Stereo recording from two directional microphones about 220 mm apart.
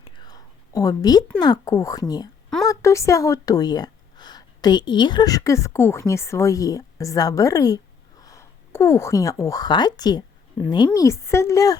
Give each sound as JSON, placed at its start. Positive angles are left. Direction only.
{"t": 0.0, "sound": "whispering", "side_deg": 20}
{"t": 1.4, "sound": "a woman's voice", "side_deg": 15}